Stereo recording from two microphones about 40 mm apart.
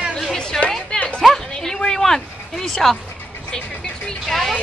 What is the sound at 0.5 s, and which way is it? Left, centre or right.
Music, centre.